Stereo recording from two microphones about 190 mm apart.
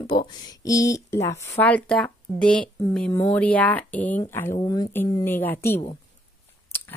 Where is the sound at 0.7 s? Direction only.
15° left (ahead or behind).